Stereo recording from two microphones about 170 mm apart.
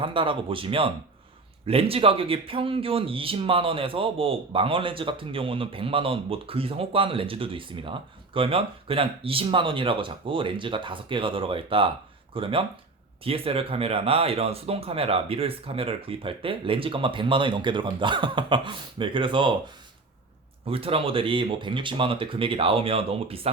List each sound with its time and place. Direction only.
0.0 s speech: 30° right (ahead or behind)
20.7 s speech: 35° right (ahead or behind)